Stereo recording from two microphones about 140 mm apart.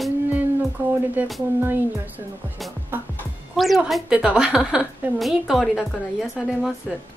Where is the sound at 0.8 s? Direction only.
15° right (ahead or behind).